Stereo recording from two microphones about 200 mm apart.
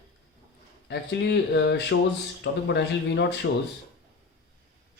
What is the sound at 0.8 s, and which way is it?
Speech, 55° left (ahead or behind).